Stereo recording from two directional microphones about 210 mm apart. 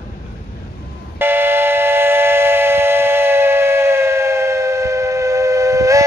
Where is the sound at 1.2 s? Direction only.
10° right (ahead or behind).